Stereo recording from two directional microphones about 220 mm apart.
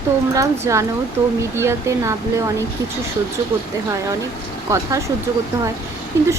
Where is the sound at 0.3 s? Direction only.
15° right (ahead or behind).